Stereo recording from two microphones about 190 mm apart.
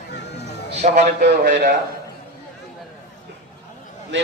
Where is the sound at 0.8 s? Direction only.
40° right (ahead or behind).